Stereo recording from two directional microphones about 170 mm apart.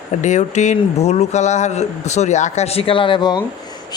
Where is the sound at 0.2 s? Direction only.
45° left (ahead or behind).